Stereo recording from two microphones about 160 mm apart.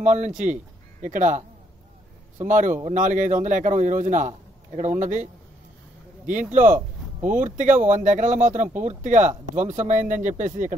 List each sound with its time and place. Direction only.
0.0 s speech: 50° right (ahead or behind)
2.4 s a man's voice: 50° right (ahead or behind)
6.5 s speech: 55° right (ahead or behind)